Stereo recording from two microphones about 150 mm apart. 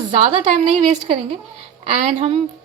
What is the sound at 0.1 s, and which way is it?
A woman's voice, 40° right (ahead or behind).